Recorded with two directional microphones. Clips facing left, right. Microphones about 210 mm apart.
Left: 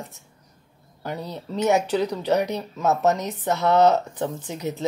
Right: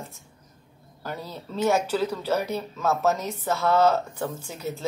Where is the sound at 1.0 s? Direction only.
20° left (ahead or behind).